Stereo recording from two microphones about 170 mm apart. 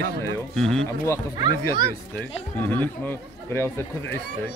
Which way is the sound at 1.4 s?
25° right (ahead or behind).